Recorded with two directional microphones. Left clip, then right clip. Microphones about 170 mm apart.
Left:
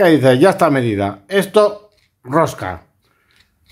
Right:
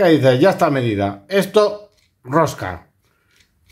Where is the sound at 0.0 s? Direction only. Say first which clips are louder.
Left 2 dB; 20° left (ahead or behind).